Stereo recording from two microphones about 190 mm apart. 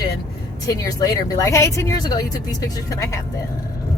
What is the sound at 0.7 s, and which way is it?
A woman's voice, 20° left (ahead or behind).